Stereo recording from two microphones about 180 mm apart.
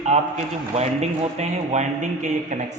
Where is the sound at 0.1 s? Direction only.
35° right (ahead or behind).